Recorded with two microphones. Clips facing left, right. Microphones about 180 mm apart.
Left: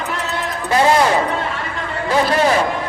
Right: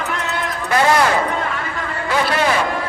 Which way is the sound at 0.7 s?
25° left (ahead or behind).